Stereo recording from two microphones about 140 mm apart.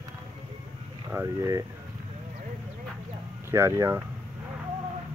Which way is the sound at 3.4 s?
20° right (ahead or behind).